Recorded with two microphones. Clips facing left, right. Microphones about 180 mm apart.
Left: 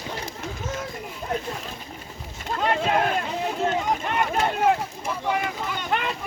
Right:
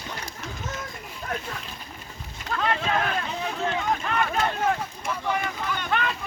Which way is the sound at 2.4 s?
30° left (ahead or behind).